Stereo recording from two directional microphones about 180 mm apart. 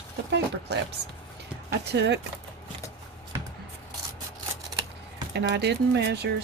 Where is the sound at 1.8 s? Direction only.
70° right (ahead or behind).